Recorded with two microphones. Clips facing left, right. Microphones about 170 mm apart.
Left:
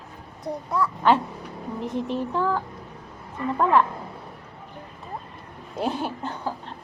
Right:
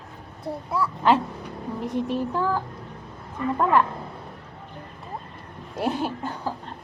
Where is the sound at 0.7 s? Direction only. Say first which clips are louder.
Even; 5° right (ahead or behind).